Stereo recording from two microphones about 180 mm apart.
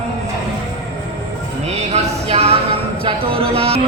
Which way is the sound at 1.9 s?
35° right (ahead or behind).